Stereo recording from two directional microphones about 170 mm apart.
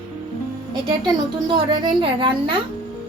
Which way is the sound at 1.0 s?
25° right (ahead or behind).